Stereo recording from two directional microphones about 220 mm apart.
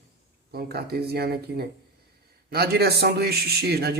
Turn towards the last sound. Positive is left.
turn(degrees=-45)  # may be behind; listen again after turning